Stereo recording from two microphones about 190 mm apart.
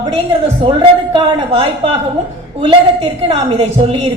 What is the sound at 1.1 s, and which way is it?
A woman's voice, 25° right (ahead or behind).